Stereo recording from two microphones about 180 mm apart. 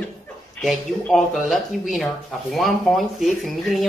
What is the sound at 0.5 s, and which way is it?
Speech, centre (ahead or behind).